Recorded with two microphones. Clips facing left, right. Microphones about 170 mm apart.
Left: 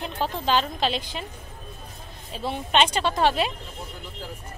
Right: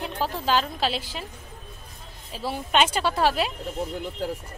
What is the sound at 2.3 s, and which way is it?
A woman's voice, 5° right (ahead or behind).